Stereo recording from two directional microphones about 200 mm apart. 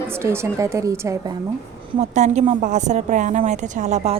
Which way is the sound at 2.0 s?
35° right (ahead or behind).